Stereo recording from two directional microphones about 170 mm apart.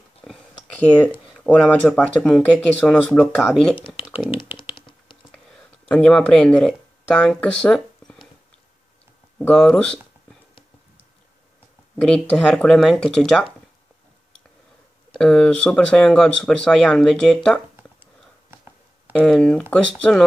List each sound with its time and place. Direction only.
0.2 s a sound: 5° left (ahead or behind)
1.4 s speech: 5° left (ahead or behind)
4.1 s computer keyboard: 30° left (ahead or behind)
5.9 s speech: 5° left (ahead or behind)
9.4 s speech: 5° left (ahead or behind)
12.0 s speech: 5° left (ahead or behind)
15.1 s speech: 5° left (ahead or behind)
19.1 s speech: 5° left (ahead or behind)